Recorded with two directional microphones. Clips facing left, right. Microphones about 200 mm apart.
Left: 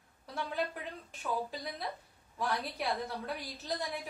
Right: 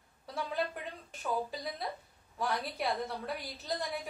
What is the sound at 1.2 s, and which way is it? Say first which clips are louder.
A woman's voice: right 1 dB; centre (ahead or behind).